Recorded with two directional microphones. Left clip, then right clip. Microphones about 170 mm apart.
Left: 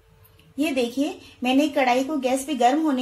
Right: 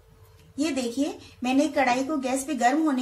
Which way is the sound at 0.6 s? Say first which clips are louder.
Left 4 dB; 35° left (ahead or behind).